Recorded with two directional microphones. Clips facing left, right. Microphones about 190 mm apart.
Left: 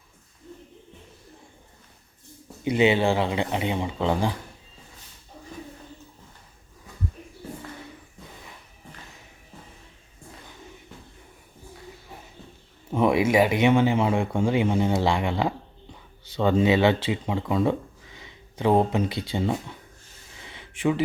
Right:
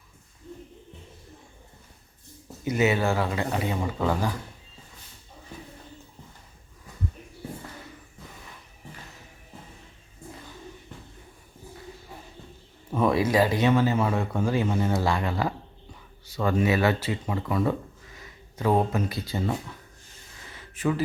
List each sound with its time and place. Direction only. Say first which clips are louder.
2.7 s speech: left 3 dB; 25° left (ahead or behind)
12.9 s speech: left 2 dB; 20° left (ahead or behind)
20.5 s a sound: left 2 dB; 20° left (ahead or behind)